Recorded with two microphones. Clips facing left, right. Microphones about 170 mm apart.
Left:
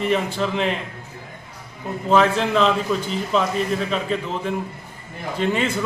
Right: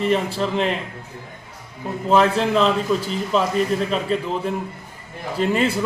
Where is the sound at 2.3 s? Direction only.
Centre (ahead or behind).